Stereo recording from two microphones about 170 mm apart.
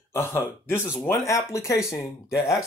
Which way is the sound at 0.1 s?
15° left (ahead or behind).